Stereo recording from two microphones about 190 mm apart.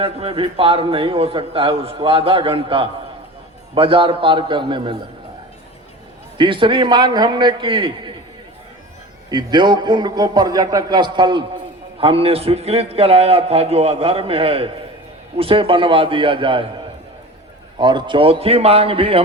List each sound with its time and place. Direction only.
0.0 s a man's voice: 30° right (ahead or behind)
6.3 s a man's voice: 25° right (ahead or behind)
9.3 s a man's voice: 25° right (ahead or behind)